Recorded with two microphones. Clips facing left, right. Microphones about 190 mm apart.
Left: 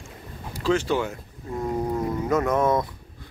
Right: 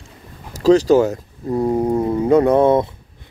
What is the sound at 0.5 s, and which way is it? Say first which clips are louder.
Speech: right 11 dB; 40° right (ahead or behind).